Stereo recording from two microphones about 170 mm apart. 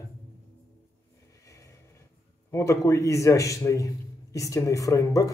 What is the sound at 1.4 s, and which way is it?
Vehicle, 20° left (ahead or behind).